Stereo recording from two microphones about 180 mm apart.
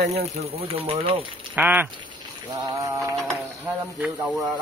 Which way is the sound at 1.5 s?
10° right (ahead or behind).